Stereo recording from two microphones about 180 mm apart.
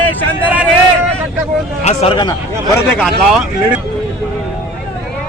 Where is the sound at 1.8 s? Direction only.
30° left (ahead or behind).